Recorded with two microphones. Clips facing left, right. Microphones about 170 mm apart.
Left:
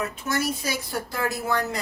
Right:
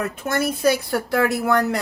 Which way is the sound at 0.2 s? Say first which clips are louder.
Right 8 dB; 55° right (ahead or behind).